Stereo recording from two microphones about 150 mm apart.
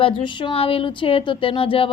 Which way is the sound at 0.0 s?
35° left (ahead or behind).